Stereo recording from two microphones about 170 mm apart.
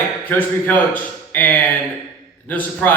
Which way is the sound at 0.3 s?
10° left (ahead or behind).